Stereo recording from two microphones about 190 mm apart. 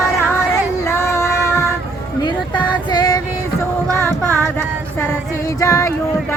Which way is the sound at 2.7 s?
20° left (ahead or behind).